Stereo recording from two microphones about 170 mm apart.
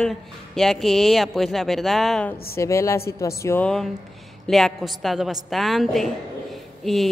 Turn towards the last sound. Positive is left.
turn(degrees=0)  # may be behind; listen again after turning